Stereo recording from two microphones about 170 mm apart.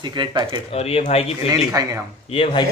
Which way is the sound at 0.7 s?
35° left (ahead or behind).